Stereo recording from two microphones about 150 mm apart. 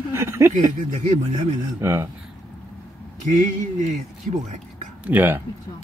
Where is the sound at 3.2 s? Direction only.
55° right (ahead or behind).